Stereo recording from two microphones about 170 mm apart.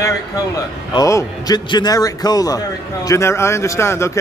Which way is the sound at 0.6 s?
20° left (ahead or behind).